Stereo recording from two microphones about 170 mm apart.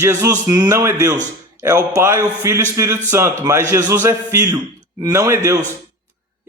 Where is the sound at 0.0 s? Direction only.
15° right (ahead or behind).